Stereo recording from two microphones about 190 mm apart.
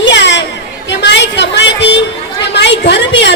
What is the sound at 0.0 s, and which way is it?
Chatter, 70° left (ahead or behind).